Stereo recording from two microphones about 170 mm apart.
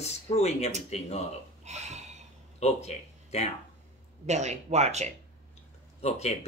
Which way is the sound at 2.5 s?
40° left (ahead or behind).